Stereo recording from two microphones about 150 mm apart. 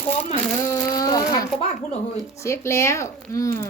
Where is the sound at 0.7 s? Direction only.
25° left (ahead or behind).